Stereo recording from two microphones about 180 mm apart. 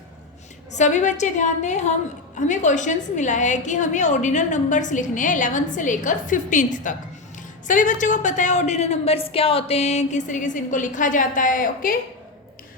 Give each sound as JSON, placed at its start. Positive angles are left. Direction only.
{"t": 0.8, "sound": "a woman's voice", "side_deg": 40}